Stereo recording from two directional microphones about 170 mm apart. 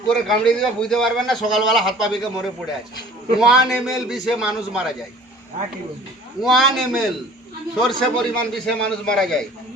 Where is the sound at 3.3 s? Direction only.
Centre (ahead or behind).